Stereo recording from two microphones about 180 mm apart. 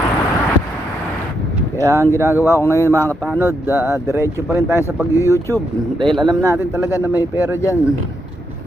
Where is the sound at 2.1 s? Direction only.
15° right (ahead or behind).